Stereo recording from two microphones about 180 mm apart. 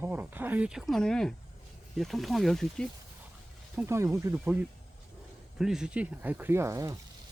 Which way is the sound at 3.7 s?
15° right (ahead or behind).